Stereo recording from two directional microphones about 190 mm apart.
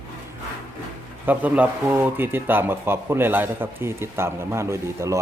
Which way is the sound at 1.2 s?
10° right (ahead or behind).